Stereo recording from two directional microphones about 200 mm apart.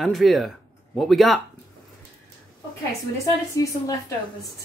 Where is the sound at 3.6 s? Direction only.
15° left (ahead or behind).